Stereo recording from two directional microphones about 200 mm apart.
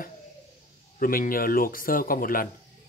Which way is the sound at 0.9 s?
45° left (ahead or behind).